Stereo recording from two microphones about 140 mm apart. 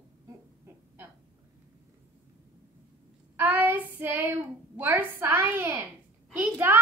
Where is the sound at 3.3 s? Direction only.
10° right (ahead or behind).